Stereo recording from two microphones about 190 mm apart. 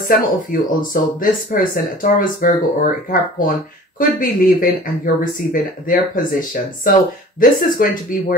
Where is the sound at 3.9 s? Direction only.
45° left (ahead or behind).